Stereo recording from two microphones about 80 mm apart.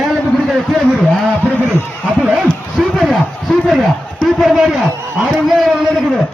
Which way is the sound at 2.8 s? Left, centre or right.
Centre.